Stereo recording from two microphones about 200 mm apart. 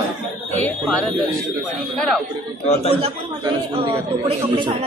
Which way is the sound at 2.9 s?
25° right (ahead or behind).